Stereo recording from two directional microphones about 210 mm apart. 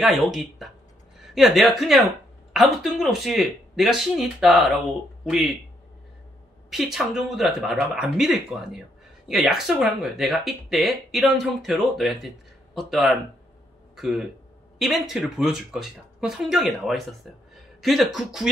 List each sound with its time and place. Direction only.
0.0 s speech: centre (ahead or behind)
6.7 s speech: centre (ahead or behind)